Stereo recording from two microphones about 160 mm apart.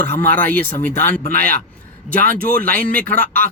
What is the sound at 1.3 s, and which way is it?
A man's voice, 65° right (ahead or behind).